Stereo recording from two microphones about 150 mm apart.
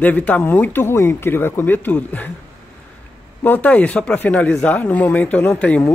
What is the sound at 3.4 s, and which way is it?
Speech, 10° left (ahead or behind).